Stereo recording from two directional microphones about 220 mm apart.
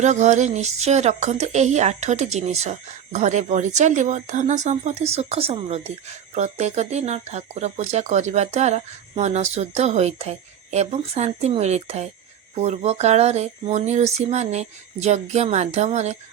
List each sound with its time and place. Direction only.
0.0 s speech: 30° right (ahead or behind)